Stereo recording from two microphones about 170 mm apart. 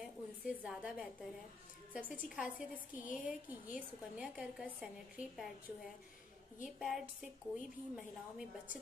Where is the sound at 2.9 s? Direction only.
50° left (ahead or behind).